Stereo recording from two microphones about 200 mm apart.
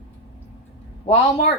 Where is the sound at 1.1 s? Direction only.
30° left (ahead or behind).